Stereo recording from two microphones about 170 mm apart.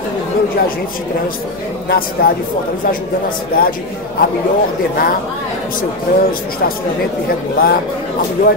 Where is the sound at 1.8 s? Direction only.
60° left (ahead or behind).